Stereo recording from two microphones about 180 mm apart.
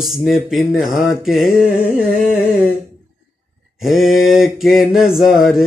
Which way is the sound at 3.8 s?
Centre (ahead or behind).